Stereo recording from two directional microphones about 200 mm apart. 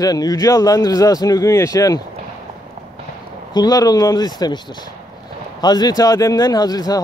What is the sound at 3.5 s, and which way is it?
A man's voice, 20° left (ahead or behind).